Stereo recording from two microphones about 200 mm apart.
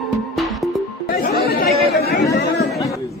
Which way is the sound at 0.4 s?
Centre (ahead or behind).